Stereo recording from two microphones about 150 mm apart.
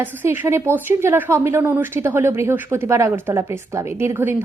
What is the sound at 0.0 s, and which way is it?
A woman's voice, 15° right (ahead or behind).